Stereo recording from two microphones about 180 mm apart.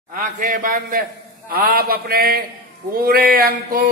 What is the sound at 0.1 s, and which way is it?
A man's voice, 50° right (ahead or behind).